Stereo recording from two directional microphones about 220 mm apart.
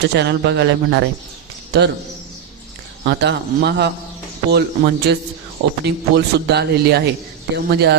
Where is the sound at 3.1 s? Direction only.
50° right (ahead or behind).